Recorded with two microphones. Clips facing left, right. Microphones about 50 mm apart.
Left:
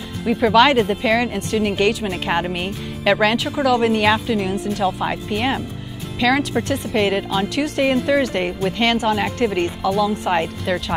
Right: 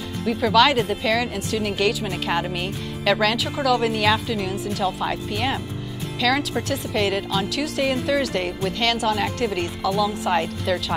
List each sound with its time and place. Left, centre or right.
0.2 s speech: centre